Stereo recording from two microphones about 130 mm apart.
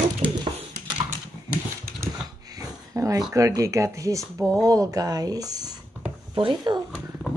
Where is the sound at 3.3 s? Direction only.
25° right (ahead or behind).